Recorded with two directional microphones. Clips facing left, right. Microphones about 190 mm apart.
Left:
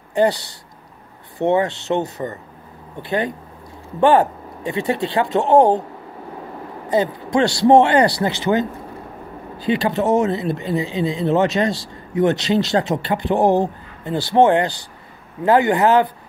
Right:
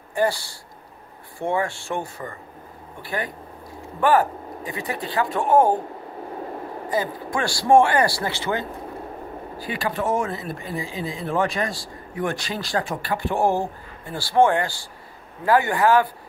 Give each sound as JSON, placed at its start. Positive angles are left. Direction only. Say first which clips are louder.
{"t": 0.1, "sound": "speech", "louder": "left 5 dB", "side_deg": 20}
{"t": 6.9, "sound": "speech", "louder": "left 8 dB", "side_deg": 25}